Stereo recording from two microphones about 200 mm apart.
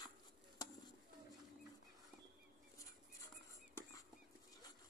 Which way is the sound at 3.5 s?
15° left (ahead or behind).